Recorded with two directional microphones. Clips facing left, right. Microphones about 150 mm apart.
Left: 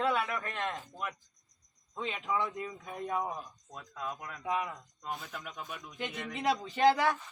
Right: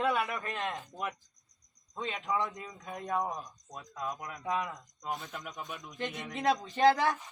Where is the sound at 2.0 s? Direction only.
5° left (ahead or behind).